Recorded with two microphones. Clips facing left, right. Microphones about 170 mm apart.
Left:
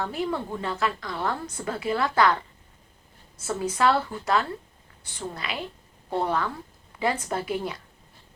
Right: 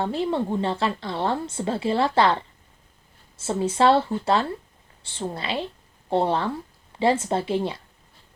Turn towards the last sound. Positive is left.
turn(degrees=-25)  # may be behind; listen again after turning